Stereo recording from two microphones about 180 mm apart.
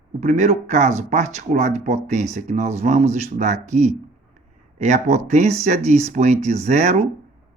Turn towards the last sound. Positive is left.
turn(degrees=-40)  # may be behind; listen again after turning